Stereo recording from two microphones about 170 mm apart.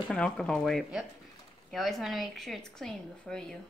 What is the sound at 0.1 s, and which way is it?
A woman's voice, 5° left (ahead or behind).